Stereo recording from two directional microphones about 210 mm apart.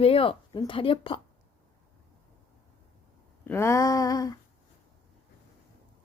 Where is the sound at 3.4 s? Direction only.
10° left (ahead or behind).